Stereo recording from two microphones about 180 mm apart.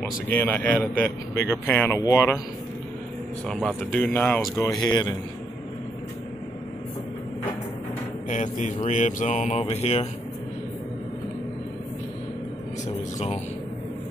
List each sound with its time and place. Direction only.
0.0 s a man's voice: 10° left (ahead or behind)
3.4 s a man's voice: 5° left (ahead or behind); by 5.1 s 20° left (ahead or behind)
8.3 s speech: 40° left (ahead or behind)